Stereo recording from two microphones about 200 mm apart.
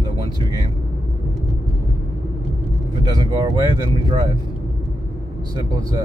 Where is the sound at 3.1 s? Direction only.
20° right (ahead or behind).